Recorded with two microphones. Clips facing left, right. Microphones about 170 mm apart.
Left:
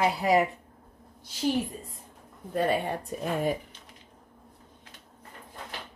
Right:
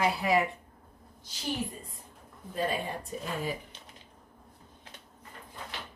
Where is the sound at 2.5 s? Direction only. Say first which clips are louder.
Left 5 dB; 65° left (ahead or behind).